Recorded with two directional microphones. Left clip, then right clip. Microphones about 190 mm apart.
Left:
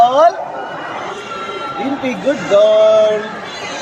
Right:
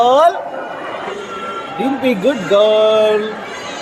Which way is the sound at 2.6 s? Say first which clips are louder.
Left 3 dB; 40° right (ahead or behind).